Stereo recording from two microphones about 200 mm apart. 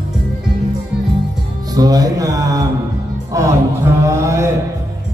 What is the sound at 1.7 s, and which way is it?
Speech, 20° right (ahead or behind).